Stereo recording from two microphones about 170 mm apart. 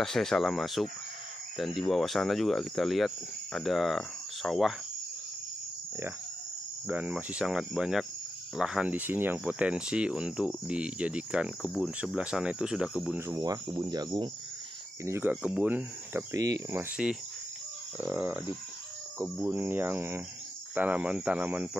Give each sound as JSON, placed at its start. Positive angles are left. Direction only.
{"t": 0.0, "sound": "speech", "side_deg": 5}
{"t": 6.9, "sound": "speech", "side_deg": -10}
{"t": 13.3, "sound": "speech", "side_deg": -20}
{"t": 15.0, "sound": "speech", "side_deg": -10}
{"t": 16.9, "sound": "speech", "side_deg": -5}